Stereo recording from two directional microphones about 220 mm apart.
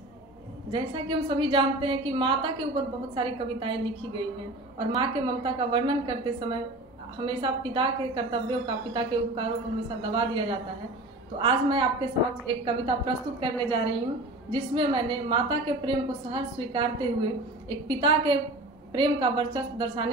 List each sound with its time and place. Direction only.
0.7 s a woman's voice: 20° right (ahead or behind)
11.3 s a woman's voice: 20° right (ahead or behind)